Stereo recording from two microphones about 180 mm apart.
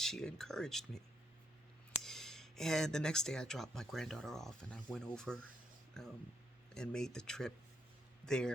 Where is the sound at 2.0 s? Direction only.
Centre (ahead or behind).